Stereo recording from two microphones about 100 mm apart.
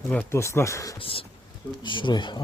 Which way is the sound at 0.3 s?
25° left (ahead or behind).